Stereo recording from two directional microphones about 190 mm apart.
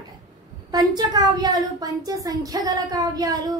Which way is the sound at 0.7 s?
20° right (ahead or behind).